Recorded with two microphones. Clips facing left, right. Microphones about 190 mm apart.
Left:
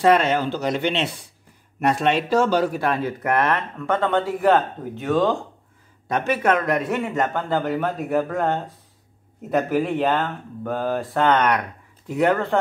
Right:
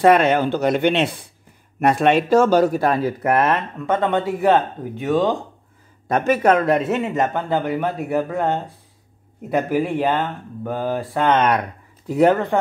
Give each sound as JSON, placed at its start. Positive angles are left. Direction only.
{"t": 0.0, "sound": "speech", "side_deg": -55}
{"t": 6.0, "sound": "speech", "side_deg": -45}
{"t": 11.2, "sound": "speech", "side_deg": -25}